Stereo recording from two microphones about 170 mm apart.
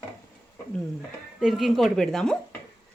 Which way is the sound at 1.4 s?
Centre (ahead or behind).